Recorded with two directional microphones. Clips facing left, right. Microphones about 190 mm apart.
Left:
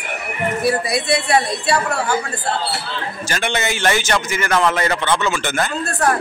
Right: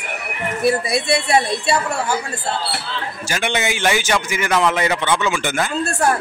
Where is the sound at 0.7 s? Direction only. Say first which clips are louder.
Right 2 dB; 25° right (ahead or behind).